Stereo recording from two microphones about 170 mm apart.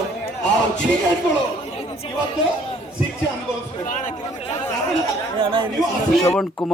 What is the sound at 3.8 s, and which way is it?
Speech, 50° left (ahead or behind).